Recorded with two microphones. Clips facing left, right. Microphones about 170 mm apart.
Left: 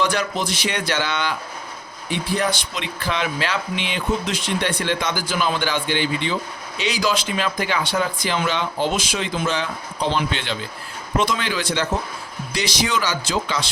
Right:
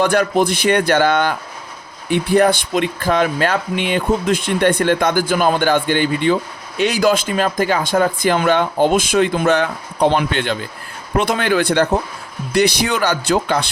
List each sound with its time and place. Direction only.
0.0 s a man's voice: 55° right (ahead or behind)